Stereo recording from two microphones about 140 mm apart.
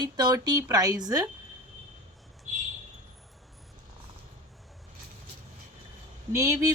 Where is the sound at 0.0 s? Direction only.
30° right (ahead or behind).